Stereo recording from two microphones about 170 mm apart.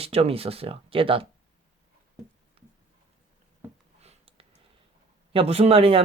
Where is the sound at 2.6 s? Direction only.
30° right (ahead or behind).